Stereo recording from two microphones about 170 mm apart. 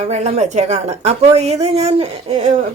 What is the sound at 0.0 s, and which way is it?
Speech, 40° right (ahead or behind).